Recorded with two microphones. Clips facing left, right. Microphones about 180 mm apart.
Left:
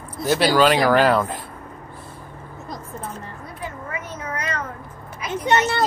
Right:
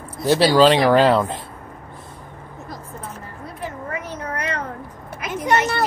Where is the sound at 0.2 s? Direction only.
30° right (ahead or behind).